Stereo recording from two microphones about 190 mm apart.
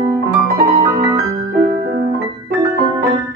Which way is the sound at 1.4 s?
55° right (ahead or behind).